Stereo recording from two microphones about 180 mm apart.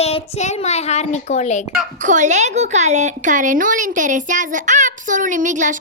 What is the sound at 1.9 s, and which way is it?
A woman's voice, 45° right (ahead or behind).